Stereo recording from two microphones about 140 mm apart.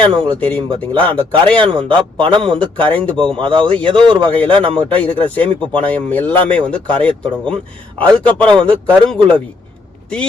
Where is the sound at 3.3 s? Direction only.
35° right (ahead or behind).